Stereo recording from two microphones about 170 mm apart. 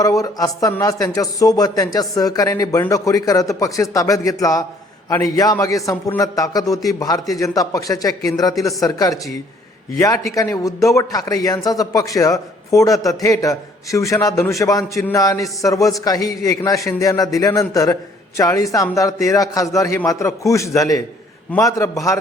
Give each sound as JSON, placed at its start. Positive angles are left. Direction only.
{"t": 0.0, "sound": "a man's voice", "side_deg": 20}